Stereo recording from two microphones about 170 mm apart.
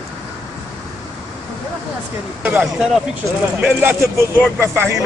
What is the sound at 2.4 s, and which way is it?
Speech, 5° right (ahead or behind).